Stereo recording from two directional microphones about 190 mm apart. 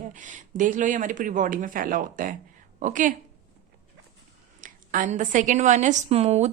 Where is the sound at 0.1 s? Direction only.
40° right (ahead or behind).